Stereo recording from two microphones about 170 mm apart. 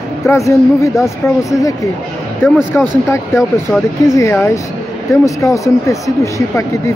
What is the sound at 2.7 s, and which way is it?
Speech, 10° left (ahead or behind).